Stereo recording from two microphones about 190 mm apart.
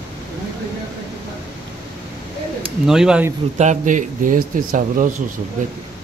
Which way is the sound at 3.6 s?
40° right (ahead or behind).